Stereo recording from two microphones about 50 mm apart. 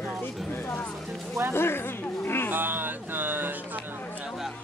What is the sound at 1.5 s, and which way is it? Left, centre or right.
A woman's voice, left.